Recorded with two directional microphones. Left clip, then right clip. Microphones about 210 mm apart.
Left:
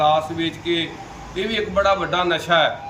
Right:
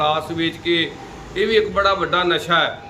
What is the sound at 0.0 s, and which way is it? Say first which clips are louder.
A man's voice: left 1 dB; 10° right (ahead or behind).